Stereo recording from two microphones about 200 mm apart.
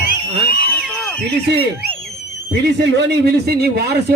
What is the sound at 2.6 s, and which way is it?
A man's voice, 55° right (ahead or behind).